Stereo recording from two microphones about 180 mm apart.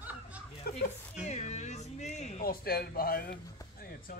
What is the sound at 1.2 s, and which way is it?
Music, 40° left (ahead or behind).